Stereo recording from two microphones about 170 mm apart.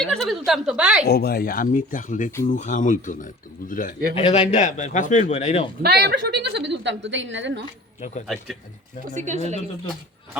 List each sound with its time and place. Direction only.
0.0 s a woman's voice: centre (ahead or behind)
1.0 s a man's voice: 65° left (ahead or behind); by 3.9 s 50° left (ahead or behind)
4.1 s a man's voice: 40° left (ahead or behind)
5.8 s a woman's voice: 70° right (ahead or behind); by 7.6 s 90° right
9.0 s speech: 45° right (ahead or behind)